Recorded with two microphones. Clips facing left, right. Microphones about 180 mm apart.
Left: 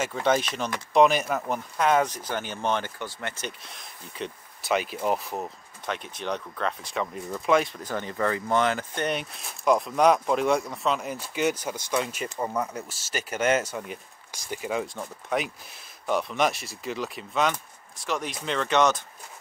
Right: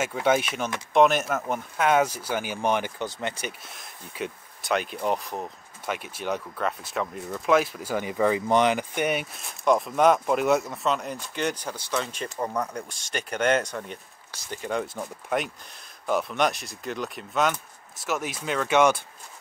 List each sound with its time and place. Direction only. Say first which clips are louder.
0.0 s speech: right 1 dB; 5° right (ahead or behind)
3.4 s speech: right 1 dB; centre (ahead or behind)